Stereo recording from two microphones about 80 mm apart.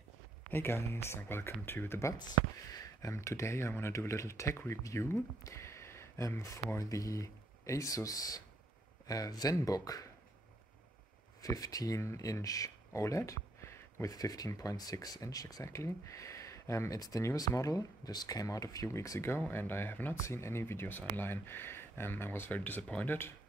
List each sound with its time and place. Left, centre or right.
0.5 s speech: left
2.1 s speech: left
11.4 s speech: left
14.1 s speech: left